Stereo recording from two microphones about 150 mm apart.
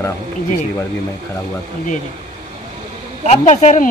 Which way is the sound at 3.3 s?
50° left (ahead or behind).